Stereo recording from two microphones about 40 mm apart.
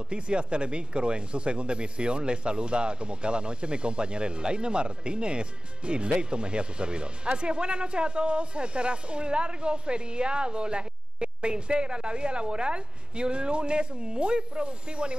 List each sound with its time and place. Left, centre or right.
0.1 s speech: right